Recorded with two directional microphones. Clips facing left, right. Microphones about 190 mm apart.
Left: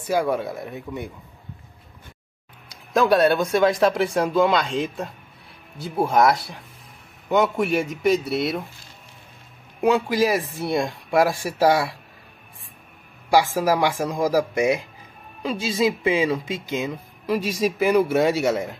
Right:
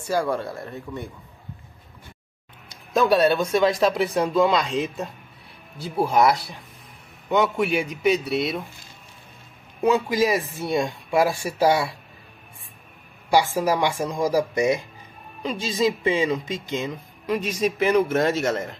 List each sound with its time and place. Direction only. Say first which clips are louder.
0.1 s speech: left 2 dB; 20° left (ahead or behind)
0.4 s speech: left 2 dB; centre (ahead or behind)
0.7 s speech: left 2 dB; 15° left (ahead or behind)
2.9 s speech: left 1 dB; centre (ahead or behind)
9.8 s speech: left 1 dB; 5° left (ahead or behind)
13.3 s speech: left 1 dB; 10° left (ahead or behind)